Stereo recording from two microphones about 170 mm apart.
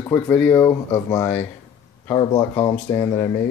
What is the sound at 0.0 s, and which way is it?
Speech, 10° left (ahead or behind).